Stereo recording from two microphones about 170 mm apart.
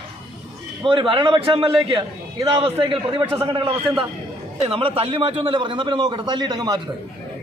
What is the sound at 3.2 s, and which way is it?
Speech, 15° right (ahead or behind).